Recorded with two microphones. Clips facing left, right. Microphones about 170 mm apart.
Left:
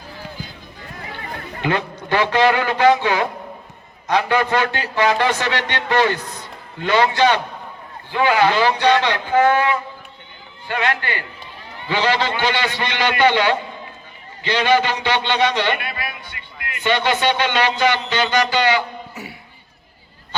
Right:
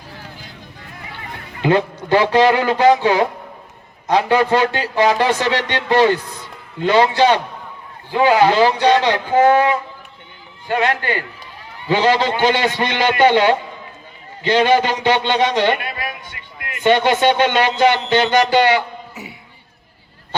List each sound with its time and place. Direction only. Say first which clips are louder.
1.6 s a man's voice: right 6 dB; 30° right (ahead or behind); by 18.8 s 55° right (ahead or behind)